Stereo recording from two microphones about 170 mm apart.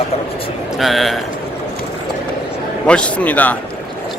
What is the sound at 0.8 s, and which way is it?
Speech, centre (ahead or behind).